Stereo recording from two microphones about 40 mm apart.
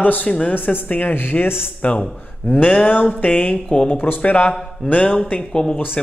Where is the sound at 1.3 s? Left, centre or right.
Left.